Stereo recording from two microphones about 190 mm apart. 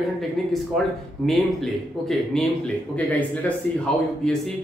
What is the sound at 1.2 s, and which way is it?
A man's voice, centre (ahead or behind).